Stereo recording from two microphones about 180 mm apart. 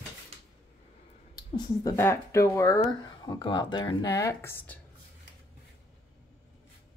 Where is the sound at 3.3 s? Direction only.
25° left (ahead or behind).